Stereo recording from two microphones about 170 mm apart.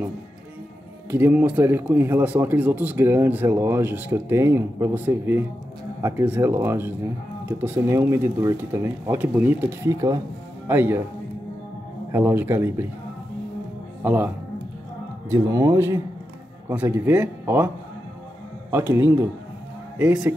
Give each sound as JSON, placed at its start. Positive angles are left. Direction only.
{"t": 1.1, "sound": "speech", "side_deg": -10}
{"t": 12.1, "sound": "speech", "side_deg": -15}
{"t": 14.0, "sound": "speech", "side_deg": -10}
{"t": 15.5, "sound": "speech", "side_deg": -15}
{"t": 18.7, "sound": "speech", "side_deg": -15}